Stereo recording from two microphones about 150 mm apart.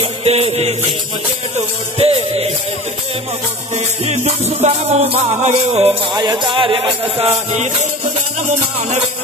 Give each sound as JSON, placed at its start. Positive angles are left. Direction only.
{"t": 0.0, "sound": "music", "side_deg": -40}
{"t": 2.0, "sound": "music", "side_deg": -45}
{"t": 3.7, "sound": "music", "side_deg": -50}